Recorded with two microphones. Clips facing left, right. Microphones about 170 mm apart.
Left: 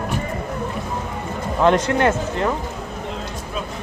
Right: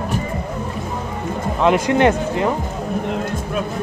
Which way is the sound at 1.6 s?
5° right (ahead or behind).